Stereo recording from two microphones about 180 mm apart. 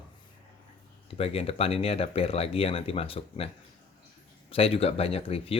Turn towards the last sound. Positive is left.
turn(degrees=30)  # may be behind; listen again after turning